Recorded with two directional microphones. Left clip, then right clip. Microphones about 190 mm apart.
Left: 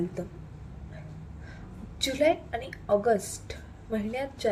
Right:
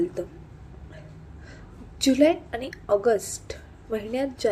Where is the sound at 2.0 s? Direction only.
15° right (ahead or behind).